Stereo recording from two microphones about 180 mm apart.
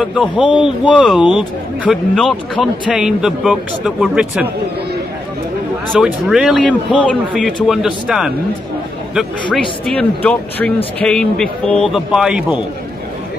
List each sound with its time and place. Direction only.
0.4 s a man's voice: 25° left (ahead or behind)
0.9 s a man's voice: 5° right (ahead or behind)
5.9 s a man's voice: 5° right (ahead or behind)